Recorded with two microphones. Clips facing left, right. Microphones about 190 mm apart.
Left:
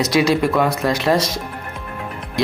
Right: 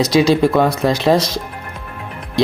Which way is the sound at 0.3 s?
30° right (ahead or behind).